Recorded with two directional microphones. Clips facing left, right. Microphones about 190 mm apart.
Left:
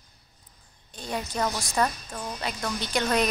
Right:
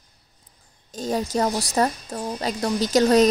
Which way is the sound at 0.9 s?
40° right (ahead or behind).